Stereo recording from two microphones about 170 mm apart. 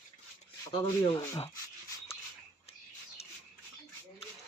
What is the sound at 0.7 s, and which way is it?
Speech, 30° left (ahead or behind).